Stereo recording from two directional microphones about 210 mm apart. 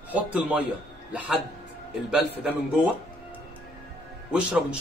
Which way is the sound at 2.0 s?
5° right (ahead or behind).